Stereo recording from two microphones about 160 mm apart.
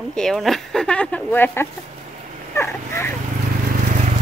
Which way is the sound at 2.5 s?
15° left (ahead or behind).